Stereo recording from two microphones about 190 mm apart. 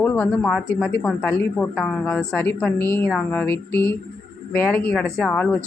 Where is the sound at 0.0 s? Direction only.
10° left (ahead or behind).